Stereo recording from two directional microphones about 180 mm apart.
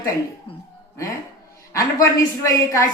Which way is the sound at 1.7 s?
15° left (ahead or behind).